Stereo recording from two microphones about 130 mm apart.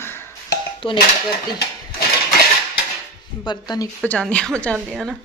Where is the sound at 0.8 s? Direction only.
45° left (ahead or behind).